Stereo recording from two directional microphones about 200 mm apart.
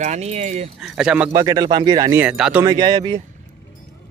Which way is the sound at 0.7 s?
Centre (ahead or behind).